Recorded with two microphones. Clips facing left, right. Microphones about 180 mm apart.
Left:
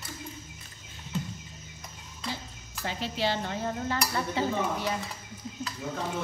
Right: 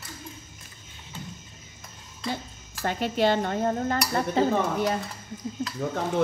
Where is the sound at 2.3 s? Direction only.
55° right (ahead or behind).